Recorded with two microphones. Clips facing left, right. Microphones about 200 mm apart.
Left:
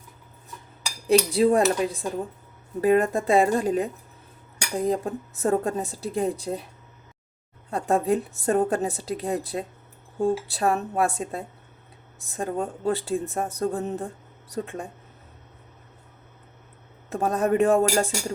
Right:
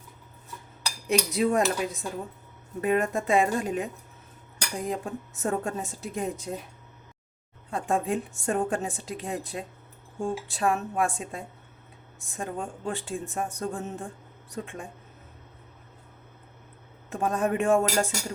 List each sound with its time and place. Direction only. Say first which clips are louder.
1.0 s speech: left 6 dB; 30° left (ahead or behind)
7.7 s speech: left 5 dB; 35° left (ahead or behind)
17.1 s speech: left 4 dB; 40° left (ahead or behind)